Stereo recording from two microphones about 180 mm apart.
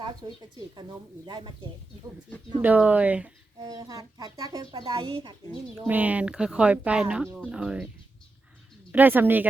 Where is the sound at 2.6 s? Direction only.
10° right (ahead or behind).